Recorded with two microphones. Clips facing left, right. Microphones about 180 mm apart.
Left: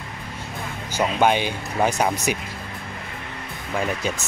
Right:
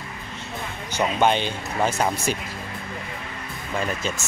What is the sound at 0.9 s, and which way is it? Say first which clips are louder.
Speech: left 1 dB; 10° left (ahead or behind).